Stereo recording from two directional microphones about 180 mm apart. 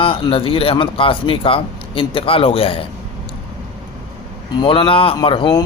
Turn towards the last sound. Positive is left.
turn(degrees=25)  # may be behind; listen again after turning